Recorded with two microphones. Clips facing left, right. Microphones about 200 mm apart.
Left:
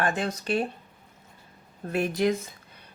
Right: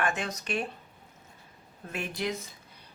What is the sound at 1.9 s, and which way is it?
Speech, 40° left (ahead or behind).